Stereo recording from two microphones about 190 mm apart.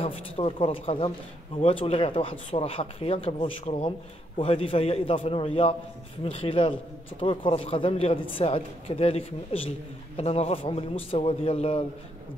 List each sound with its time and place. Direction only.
0.0 s a man's voice: 30° left (ahead or behind)